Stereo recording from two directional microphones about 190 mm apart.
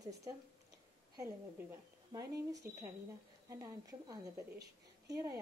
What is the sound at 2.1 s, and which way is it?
A woman's voice, 15° right (ahead or behind).